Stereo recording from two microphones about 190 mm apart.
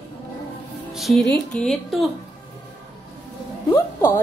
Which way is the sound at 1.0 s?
Centre (ahead or behind).